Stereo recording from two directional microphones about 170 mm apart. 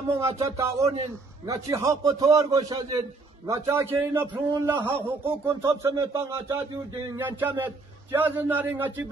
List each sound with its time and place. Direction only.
0.4 s a man's voice: 20° right (ahead or behind)